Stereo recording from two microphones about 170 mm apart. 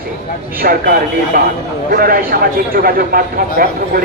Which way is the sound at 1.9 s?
60° right (ahead or behind).